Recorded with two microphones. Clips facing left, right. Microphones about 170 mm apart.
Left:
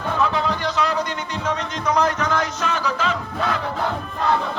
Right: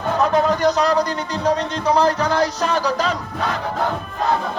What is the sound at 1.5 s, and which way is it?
Music, 35° right (ahead or behind).